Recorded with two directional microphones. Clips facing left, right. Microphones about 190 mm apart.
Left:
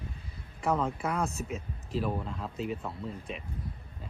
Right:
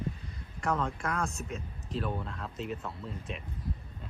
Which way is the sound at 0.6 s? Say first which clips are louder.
Left 2 dB; centre (ahead or behind).